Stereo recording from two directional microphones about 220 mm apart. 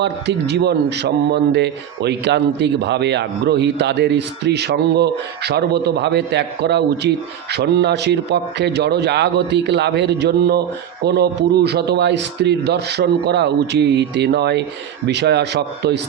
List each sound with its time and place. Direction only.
0.0 s a man's voice: 50° right (ahead or behind)